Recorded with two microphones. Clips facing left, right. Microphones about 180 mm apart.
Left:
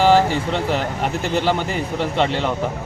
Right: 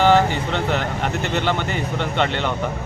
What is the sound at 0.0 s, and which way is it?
A man's voice, centre (ahead or behind).